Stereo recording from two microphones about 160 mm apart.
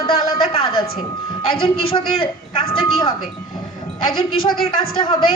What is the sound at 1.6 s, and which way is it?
A woman's voice, 35° left (ahead or behind).